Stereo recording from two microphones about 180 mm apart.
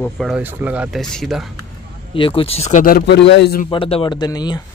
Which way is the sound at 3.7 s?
30° left (ahead or behind).